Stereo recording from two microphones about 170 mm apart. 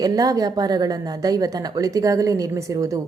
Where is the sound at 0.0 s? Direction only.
20° right (ahead or behind).